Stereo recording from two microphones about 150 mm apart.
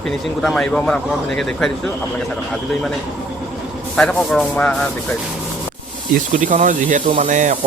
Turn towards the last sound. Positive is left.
turn(degrees=-55)  # may be behind; listen again after turning